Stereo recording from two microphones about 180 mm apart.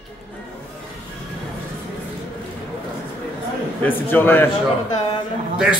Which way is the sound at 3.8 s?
10° left (ahead or behind).